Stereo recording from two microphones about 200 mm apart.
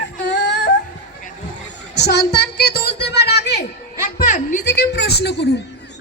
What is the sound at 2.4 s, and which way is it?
Music, 55° left (ahead or behind).